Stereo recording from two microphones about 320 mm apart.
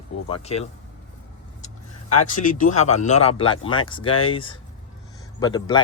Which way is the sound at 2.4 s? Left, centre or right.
Left.